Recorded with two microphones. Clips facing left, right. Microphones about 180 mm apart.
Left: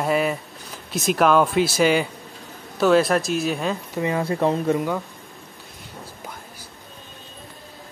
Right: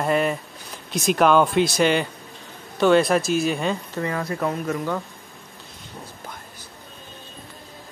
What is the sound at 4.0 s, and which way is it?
Speech, 20° left (ahead or behind).